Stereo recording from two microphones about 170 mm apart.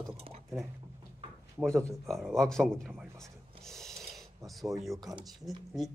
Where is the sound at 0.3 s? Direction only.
35° right (ahead or behind).